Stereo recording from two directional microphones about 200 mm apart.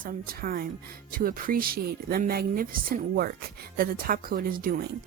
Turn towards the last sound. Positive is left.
turn(degrees=-45)  # may be behind; listen again after turning